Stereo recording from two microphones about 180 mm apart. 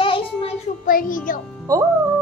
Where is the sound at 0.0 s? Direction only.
30° left (ahead or behind).